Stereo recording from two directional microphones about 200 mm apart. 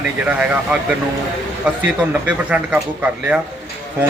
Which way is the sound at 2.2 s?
5° right (ahead or behind).